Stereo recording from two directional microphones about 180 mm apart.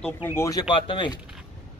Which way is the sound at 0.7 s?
30° left (ahead or behind).